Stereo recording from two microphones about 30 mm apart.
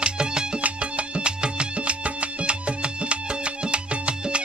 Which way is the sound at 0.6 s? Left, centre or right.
Right.